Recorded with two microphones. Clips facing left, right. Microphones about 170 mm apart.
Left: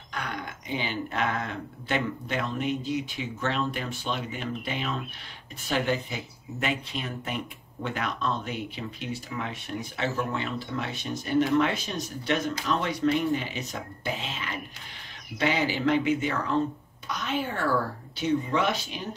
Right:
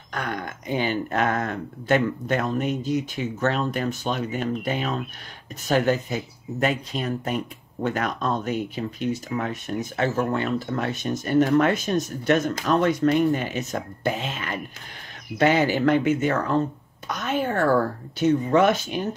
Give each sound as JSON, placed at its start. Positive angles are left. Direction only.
{"t": 0.1, "sound": "speech", "side_deg": -50}